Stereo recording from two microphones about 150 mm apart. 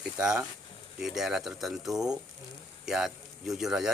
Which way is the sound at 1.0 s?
Centre (ahead or behind).